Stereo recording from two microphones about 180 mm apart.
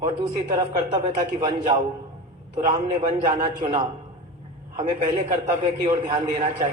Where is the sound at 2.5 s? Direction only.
40° right (ahead or behind).